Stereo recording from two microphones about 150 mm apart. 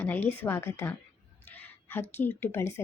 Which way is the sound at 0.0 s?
10° left (ahead or behind).